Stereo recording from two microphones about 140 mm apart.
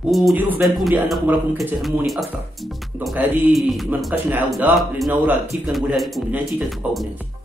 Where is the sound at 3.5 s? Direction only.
Centre (ahead or behind).